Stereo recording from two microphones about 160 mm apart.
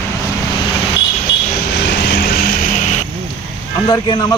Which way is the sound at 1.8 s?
90° left.